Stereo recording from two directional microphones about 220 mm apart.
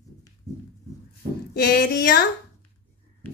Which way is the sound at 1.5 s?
45° left (ahead or behind).